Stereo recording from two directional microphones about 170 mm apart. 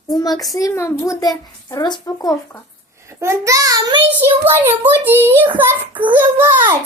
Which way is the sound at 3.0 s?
15° right (ahead or behind).